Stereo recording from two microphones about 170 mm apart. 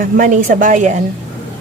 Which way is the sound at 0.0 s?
50° right (ahead or behind).